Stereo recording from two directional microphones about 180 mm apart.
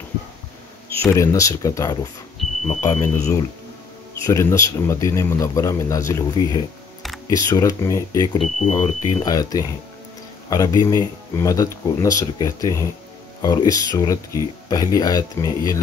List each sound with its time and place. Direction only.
0.9 s a man's voice: 15° left (ahead or behind)
2.4 s a sound: centre (ahead or behind)
2.8 s a man's voice: 15° left (ahead or behind)
8.4 s speech: 40° left (ahead or behind)
9.2 s speech: 20° left (ahead or behind)